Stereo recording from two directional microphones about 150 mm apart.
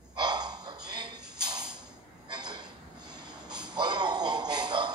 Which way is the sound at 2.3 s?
30° right (ahead or behind).